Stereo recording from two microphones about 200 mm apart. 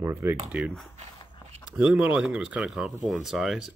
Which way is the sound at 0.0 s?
10° right (ahead or behind).